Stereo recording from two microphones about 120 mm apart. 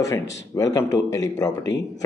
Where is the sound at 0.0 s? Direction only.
30° left (ahead or behind).